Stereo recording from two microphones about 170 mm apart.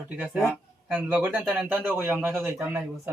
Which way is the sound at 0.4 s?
5° right (ahead or behind).